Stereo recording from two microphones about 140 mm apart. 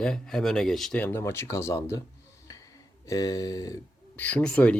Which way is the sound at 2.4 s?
25° left (ahead or behind).